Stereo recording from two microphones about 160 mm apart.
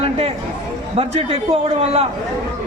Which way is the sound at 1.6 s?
40° right (ahead or behind).